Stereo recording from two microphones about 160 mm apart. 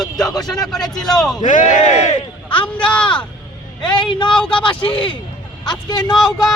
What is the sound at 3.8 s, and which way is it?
Speech, 30° left (ahead or behind).